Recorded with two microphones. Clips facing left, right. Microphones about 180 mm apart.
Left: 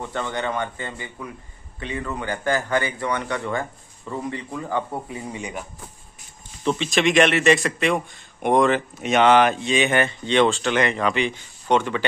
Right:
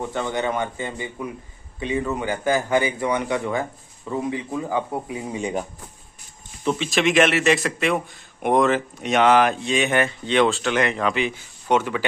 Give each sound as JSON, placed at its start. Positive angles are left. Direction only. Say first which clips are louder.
{"t": 0.0, "sound": "a man's voice", "louder": "right 2 dB", "side_deg": -10}
{"t": 5.2, "sound": "speech", "louder": "right 5 dB", "side_deg": -25}
{"t": 6.6, "sound": "a man's voice", "louder": "even", "side_deg": -5}